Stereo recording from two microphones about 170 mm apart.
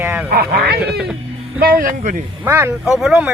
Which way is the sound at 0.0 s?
10° right (ahead or behind).